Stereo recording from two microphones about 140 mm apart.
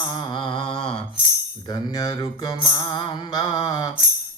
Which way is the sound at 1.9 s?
25° left (ahead or behind).